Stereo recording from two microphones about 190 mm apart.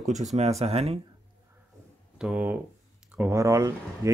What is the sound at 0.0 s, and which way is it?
Speech, 40° right (ahead or behind).